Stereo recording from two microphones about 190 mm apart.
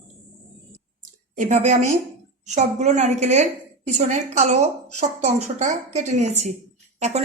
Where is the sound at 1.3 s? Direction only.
40° right (ahead or behind).